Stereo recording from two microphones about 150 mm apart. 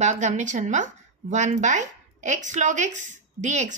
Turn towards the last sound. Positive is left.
turn(degrees=-50)  # may be behind; listen again after turning